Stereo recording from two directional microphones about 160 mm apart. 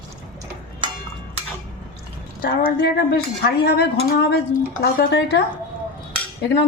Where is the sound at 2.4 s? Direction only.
70° left (ahead or behind).